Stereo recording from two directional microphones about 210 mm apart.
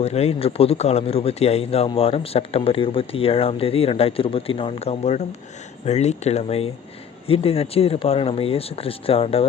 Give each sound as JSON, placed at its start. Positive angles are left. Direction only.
{"t": 0.0, "sound": "a man's voice", "side_deg": 30}